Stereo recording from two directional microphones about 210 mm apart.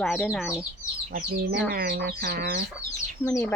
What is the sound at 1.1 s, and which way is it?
Speech, 50° right (ahead or behind).